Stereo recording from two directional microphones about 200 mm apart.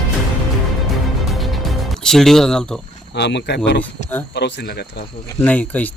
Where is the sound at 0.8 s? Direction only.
Centre (ahead or behind).